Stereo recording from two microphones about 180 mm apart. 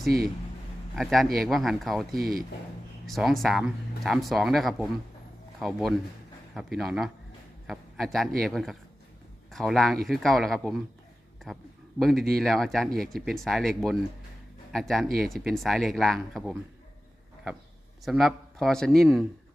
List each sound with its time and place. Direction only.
0.9 s speech: centre (ahead or behind)
2.1 s speech: 55° right (ahead or behind)
3.1 s a man's voice: centre (ahead or behind)
11.9 s speech: centre (ahead or behind)
18.0 s speech: centre (ahead or behind)